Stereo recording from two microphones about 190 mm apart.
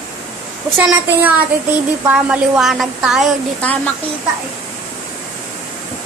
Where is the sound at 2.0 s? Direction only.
5° right (ahead or behind).